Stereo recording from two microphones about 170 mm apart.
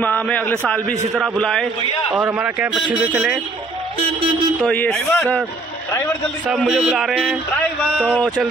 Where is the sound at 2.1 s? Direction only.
5° right (ahead or behind).